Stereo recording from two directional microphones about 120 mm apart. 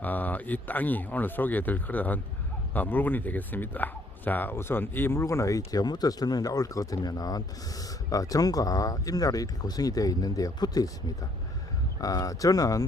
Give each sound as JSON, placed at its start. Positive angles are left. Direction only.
{"t": 0.0, "sound": "speech", "side_deg": 15}
{"t": 11.9, "sound": "speech", "side_deg": 30}